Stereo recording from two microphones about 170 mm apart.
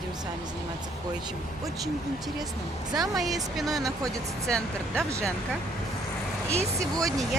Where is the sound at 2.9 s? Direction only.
20° right (ahead or behind).